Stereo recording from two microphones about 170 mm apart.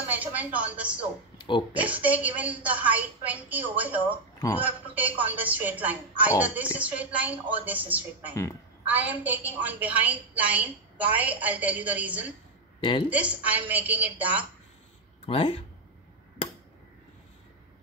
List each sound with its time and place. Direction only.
0.1 s a woman's voice: 10° right (ahead or behind)
15.2 s speech: 35° left (ahead or behind)